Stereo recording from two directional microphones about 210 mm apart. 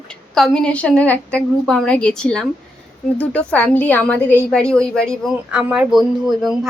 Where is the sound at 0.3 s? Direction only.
Centre (ahead or behind).